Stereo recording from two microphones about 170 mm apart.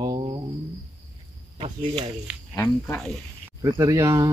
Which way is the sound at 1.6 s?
30° right (ahead or behind).